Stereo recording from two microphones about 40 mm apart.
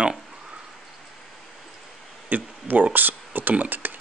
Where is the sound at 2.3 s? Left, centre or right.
Right.